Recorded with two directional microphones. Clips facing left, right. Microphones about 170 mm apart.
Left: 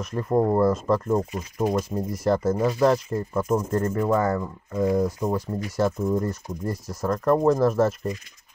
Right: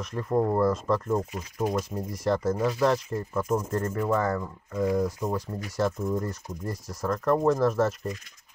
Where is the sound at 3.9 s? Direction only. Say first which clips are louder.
Left 3 dB; 15° left (ahead or behind); by 7.9 s 30° left (ahead or behind).